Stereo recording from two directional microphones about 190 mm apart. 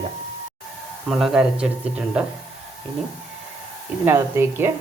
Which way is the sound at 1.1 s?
Centre (ahead or behind).